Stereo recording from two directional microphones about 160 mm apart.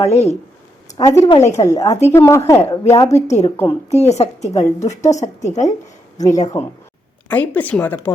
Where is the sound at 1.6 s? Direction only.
20° left (ahead or behind).